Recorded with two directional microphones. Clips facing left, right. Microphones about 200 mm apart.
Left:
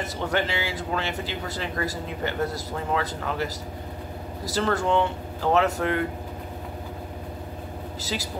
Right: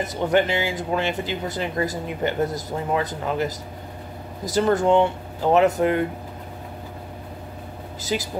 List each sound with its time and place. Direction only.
0.0 s speech: 20° right (ahead or behind)
8.0 s speech: 15° right (ahead or behind)